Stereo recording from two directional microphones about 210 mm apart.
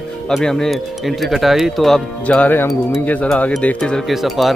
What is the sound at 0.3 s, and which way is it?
Speech, centre (ahead or behind).